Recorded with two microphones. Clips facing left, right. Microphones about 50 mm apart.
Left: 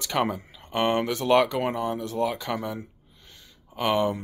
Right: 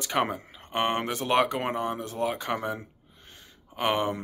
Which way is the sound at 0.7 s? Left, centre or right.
Right.